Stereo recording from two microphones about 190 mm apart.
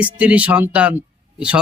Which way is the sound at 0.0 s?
5° right (ahead or behind).